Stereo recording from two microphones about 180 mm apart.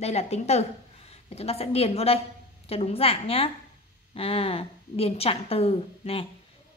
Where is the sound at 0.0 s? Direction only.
35° left (ahead or behind).